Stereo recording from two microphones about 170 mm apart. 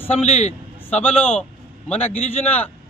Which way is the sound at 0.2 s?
40° left (ahead or behind).